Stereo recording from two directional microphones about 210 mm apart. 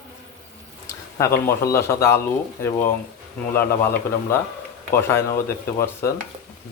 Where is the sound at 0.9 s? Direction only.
15° left (ahead or behind).